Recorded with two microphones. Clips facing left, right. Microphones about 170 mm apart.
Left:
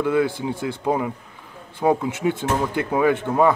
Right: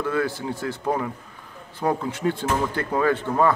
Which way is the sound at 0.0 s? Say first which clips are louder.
Left 4 dB; 15° left (ahead or behind).